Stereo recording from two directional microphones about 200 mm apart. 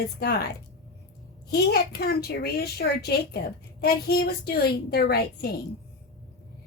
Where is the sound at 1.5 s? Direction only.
50° left (ahead or behind).